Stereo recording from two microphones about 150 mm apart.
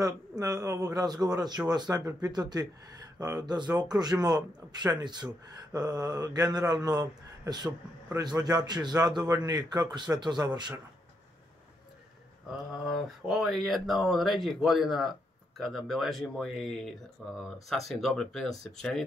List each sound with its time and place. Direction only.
0.0 s speech: 20° right (ahead or behind)
12.4 s speech: 5° right (ahead or behind)